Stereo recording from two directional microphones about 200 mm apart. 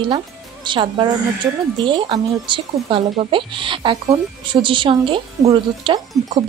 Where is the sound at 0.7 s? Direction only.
25° right (ahead or behind).